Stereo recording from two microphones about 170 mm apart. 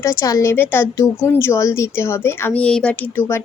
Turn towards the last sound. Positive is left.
turn(degrees=10)  # may be behind; listen again after turning